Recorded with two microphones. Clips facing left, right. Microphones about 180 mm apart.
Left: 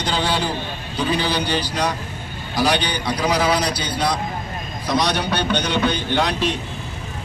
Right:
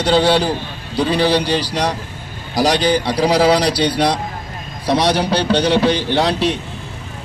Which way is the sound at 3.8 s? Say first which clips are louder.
Right 6 dB; 75° right (ahead or behind).